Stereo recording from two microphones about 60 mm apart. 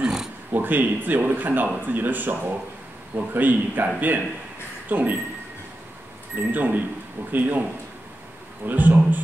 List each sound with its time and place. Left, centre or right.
0.0 s dog: centre
0.5 s speech: right
6.3 s speech: right
8.6 s speech: right